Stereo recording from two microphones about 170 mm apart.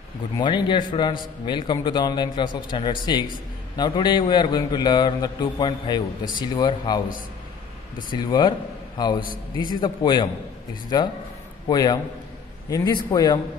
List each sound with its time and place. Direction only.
0.4 s a man's voice: 30° left (ahead or behind)
8.1 s a man's voice: 25° left (ahead or behind)